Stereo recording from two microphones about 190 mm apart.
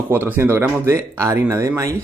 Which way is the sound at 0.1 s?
10° right (ahead or behind).